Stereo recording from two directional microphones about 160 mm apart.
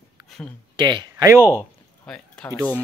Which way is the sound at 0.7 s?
30° right (ahead or behind).